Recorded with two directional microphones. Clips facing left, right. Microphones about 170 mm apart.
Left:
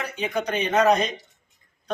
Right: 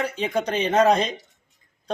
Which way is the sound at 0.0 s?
30° right (ahead or behind).